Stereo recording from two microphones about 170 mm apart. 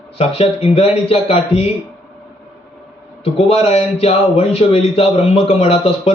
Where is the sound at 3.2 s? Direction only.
35° left (ahead or behind).